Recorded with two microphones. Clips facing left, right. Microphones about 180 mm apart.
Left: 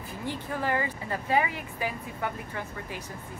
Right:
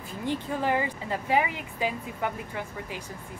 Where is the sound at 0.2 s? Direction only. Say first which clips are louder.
Right 3 dB; 20° right (ahead or behind).